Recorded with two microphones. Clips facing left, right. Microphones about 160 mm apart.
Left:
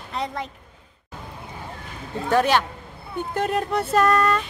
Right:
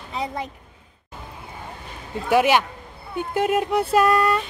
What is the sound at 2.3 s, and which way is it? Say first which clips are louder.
Speech: right 2 dB; 10° right (ahead or behind).